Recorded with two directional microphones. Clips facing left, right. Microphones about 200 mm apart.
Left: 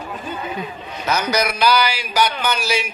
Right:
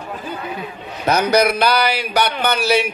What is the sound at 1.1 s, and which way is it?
A man's voice, 55° right (ahead or behind).